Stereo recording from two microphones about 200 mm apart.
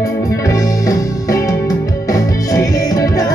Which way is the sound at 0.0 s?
15° left (ahead or behind).